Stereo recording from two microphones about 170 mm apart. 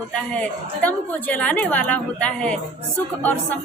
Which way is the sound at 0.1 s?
10° left (ahead or behind).